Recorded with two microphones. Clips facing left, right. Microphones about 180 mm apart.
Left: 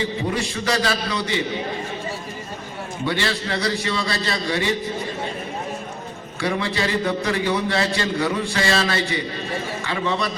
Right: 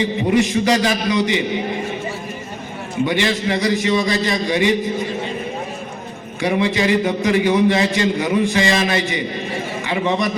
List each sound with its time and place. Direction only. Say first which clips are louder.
0.0 s a man's voice: right 7 dB; 15° right (ahead or behind)
3.1 s a man's voice: right 4 dB; 15° right (ahead or behind)
6.4 s a man's voice: right 6 dB; 15° right (ahead or behind)